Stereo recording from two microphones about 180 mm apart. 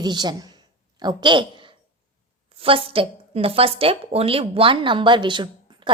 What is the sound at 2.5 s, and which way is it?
A woman's voice, 30° right (ahead or behind).